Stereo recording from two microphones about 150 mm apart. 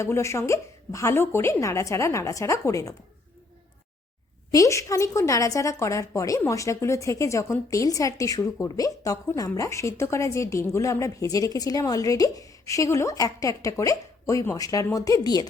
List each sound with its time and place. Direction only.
0.0 s speech: 20° left (ahead or behind)
4.5 s speech: 20° left (ahead or behind)